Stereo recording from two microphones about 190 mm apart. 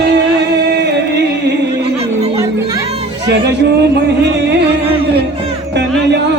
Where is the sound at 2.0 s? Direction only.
35° right (ahead or behind).